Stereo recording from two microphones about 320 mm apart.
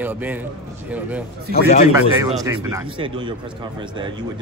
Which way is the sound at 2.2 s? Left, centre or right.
Centre.